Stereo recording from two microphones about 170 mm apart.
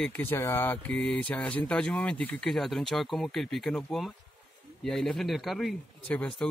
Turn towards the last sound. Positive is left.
turn(degrees=5)  # may be behind; listen again after turning